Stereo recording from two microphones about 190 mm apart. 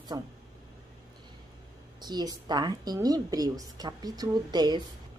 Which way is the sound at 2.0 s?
20° right (ahead or behind).